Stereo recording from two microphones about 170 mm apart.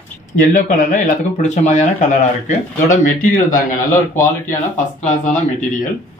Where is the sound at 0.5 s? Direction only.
50° left (ahead or behind).